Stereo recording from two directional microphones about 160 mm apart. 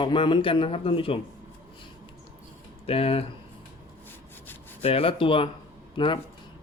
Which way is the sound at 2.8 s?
35° left (ahead or behind).